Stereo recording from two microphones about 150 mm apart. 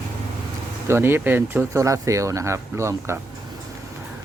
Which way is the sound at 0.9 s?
15° right (ahead or behind).